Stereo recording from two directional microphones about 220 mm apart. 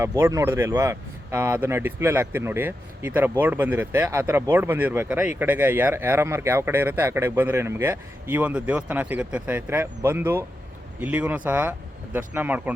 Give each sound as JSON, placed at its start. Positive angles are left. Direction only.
{"t": 0.0, "sound": "speech", "side_deg": -10}